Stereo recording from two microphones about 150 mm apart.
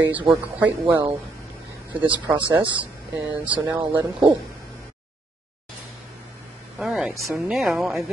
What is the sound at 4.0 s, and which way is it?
Speech, 20° right (ahead or behind).